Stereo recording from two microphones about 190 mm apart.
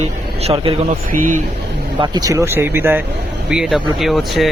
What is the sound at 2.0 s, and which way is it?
Speech, 20° right (ahead or behind).